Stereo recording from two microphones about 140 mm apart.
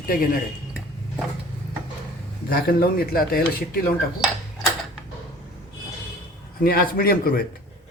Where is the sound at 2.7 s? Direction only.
90° left.